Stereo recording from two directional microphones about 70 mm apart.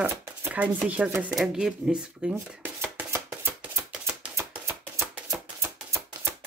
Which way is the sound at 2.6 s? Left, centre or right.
Right.